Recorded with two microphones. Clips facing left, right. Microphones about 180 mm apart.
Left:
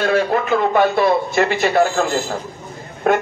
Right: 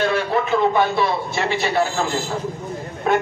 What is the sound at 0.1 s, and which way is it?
A man's voice, 50° left (ahead or behind).